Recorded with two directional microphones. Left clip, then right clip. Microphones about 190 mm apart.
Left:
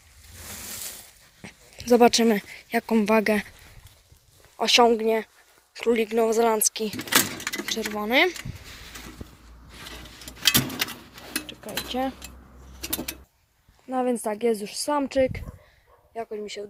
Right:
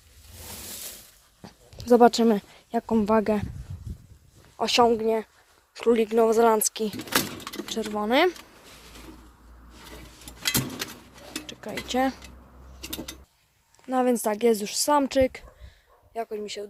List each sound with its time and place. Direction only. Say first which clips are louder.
1.4 s speech: left 3 dB; 10° right (ahead or behind)
4.5 s speech: left 2 dB; centre (ahead or behind)
5.8 s speech: right 1 dB; 15° right (ahead or behind)
6.9 s a sound: left 4 dB; 20° left (ahead or behind)
7.7 s speech: even; 20° right (ahead or behind)
10.4 s vehicle: left 6 dB; 35° left (ahead or behind)
11.4 s cutlery: left 1 dB; 30° right (ahead or behind)
12.8 s a sound: left 4 dB; 40° left (ahead or behind)
13.8 s speech: right 2 dB; 25° right (ahead or behind)